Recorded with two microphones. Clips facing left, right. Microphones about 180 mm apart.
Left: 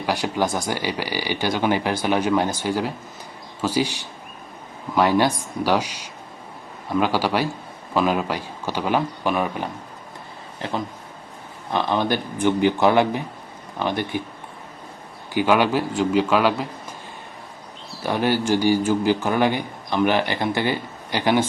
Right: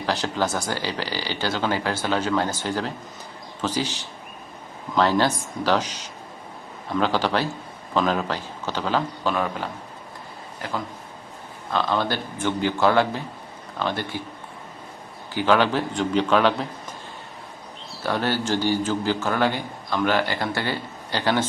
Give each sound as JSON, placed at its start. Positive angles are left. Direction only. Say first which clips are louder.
{"t": 0.0, "sound": "a man's voice", "louder": "left 2 dB", "side_deg": 15}
{"t": 15.4, "sound": "a man's voice", "louder": "left 2 dB", "side_deg": 10}
{"t": 18.0, "sound": "a man's voice", "louder": "left 3 dB", "side_deg": 15}